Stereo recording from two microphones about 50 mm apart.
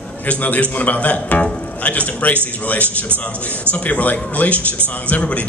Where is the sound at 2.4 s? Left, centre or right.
Left.